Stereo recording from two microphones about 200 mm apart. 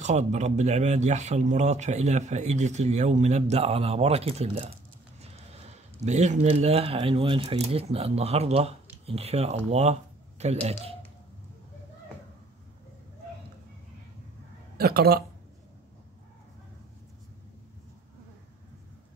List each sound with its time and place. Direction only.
0.0 s speech: 35° right (ahead or behind)
6.0 s speech: 35° right (ahead or behind)
14.8 s speech: 50° right (ahead or behind)